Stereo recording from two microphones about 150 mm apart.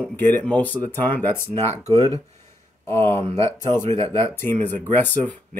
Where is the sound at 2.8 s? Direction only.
15° left (ahead or behind).